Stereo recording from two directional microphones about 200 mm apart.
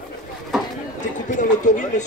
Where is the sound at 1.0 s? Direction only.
40° left (ahead or behind).